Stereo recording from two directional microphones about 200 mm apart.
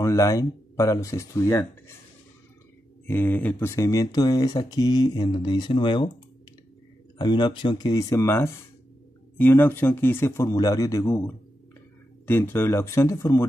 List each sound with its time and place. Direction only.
0.0 s speech: 15° left (ahead or behind)
3.1 s speech: 10° left (ahead or behind)
7.2 s speech: 20° left (ahead or behind)